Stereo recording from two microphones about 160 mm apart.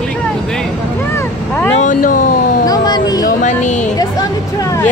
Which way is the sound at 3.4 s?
50° left (ahead or behind).